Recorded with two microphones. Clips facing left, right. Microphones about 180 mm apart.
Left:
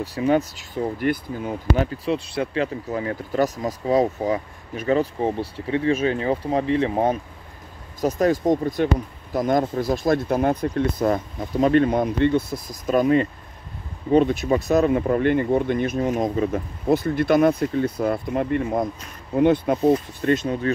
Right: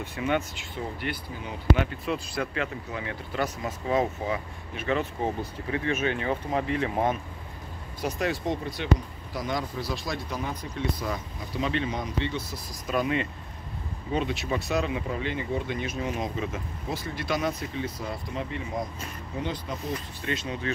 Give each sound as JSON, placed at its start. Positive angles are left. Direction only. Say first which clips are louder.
{"t": 0.0, "sound": "speech", "louder": "left 7 dB", "side_deg": 35}
{"t": 1.9, "sound": "speech", "louder": "left 6 dB", "side_deg": 30}
{"t": 8.0, "sound": "speech", "louder": "left 9 dB", "side_deg": 45}